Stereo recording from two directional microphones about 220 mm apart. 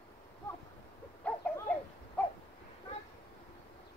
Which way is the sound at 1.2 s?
5° left (ahead or behind).